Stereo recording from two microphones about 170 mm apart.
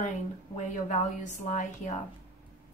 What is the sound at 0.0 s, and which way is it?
A woman's voice, 45° left (ahead or behind).